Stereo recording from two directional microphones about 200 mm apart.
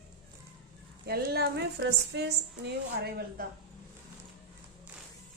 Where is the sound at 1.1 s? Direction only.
50° right (ahead or behind).